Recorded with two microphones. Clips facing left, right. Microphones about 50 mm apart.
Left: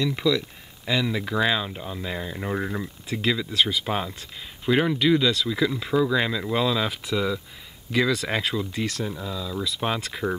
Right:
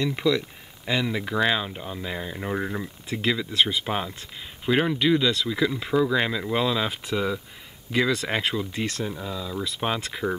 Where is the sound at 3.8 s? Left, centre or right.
Centre.